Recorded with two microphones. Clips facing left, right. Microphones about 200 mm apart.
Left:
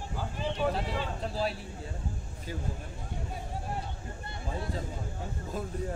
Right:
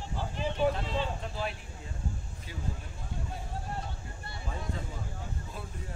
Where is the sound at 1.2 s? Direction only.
35° left (ahead or behind).